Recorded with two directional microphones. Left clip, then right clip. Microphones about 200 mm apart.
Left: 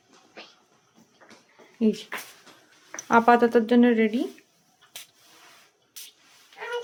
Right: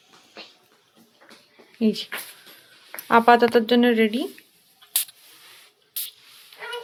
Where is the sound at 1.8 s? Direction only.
Centre (ahead or behind).